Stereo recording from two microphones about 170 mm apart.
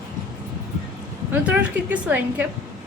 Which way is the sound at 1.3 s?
10° right (ahead or behind).